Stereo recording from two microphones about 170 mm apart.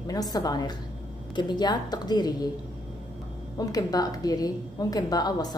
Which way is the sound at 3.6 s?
20° left (ahead or behind).